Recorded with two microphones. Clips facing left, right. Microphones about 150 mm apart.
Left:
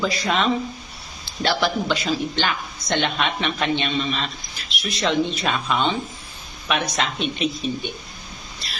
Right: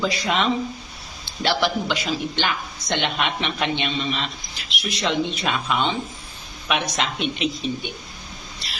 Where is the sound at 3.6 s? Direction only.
15° right (ahead or behind).